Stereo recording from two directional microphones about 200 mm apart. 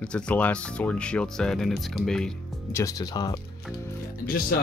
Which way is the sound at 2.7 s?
15° left (ahead or behind).